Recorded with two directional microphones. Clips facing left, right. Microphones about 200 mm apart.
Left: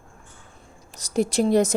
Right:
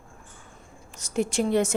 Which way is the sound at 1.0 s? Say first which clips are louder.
Left 4 dB; 35° left (ahead or behind).